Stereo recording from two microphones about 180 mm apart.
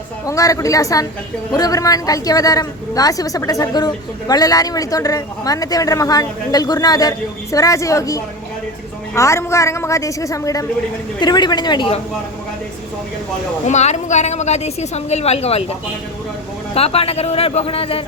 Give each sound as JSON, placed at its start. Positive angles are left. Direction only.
{"t": 0.3, "sound": "a woman's voice", "side_deg": 20}
{"t": 13.7, "sound": "a woman's voice", "side_deg": 40}
{"t": 16.7, "sound": "a woman's voice", "side_deg": 35}